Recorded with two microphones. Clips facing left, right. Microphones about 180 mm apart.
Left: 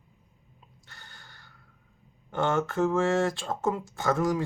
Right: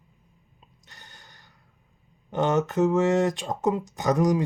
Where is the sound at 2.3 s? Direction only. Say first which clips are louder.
Right 3 dB; 20° right (ahead or behind).